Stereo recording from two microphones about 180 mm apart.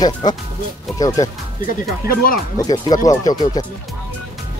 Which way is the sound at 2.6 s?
25° left (ahead or behind).